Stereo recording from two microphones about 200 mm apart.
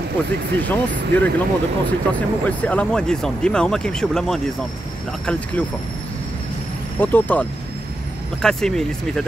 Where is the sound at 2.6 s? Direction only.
5° left (ahead or behind).